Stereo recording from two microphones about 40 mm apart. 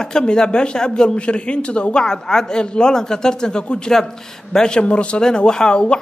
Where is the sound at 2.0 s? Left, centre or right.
Centre.